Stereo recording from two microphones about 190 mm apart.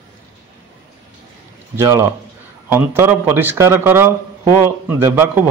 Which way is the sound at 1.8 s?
15° right (ahead or behind).